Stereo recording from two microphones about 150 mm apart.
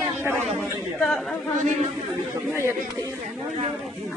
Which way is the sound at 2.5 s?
20° right (ahead or behind).